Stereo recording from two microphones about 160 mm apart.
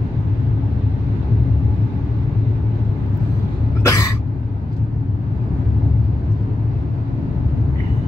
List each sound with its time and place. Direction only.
3.8 s cough: 20° left (ahead or behind)